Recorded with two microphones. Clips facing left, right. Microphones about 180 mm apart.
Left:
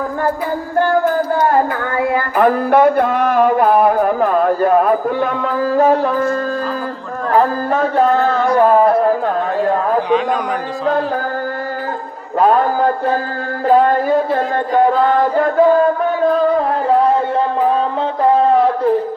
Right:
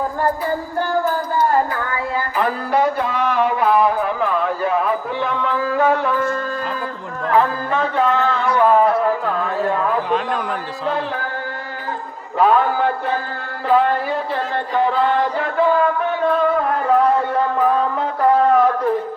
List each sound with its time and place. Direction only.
2.0 s music: 55° left (ahead or behind)
12.4 s music: 40° left (ahead or behind)
18.2 s speech: 30° left (ahead or behind)